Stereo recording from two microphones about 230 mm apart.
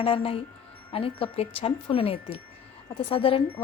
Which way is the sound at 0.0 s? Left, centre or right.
Left.